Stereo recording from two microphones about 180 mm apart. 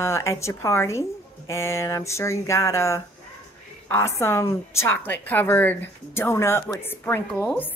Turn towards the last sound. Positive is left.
turn(degrees=10)  # may be behind; listen again after turning